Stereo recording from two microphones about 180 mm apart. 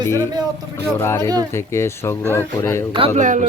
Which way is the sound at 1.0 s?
15° left (ahead or behind).